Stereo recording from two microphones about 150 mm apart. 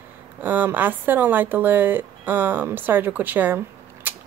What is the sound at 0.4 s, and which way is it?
Speech, 10° right (ahead or behind).